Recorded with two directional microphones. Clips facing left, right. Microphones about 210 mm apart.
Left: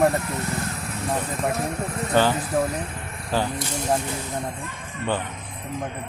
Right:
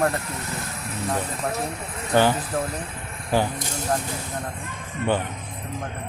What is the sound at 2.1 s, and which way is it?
Speech, 15° right (ahead or behind).